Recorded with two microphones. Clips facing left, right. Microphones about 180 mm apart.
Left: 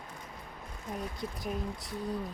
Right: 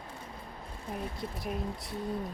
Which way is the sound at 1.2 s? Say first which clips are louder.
Even; centre (ahead or behind).